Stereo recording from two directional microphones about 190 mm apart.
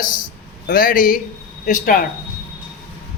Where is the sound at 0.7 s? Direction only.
50° left (ahead or behind).